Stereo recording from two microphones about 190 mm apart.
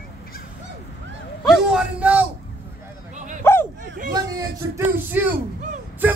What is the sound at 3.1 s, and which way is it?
Dog, 40° right (ahead or behind).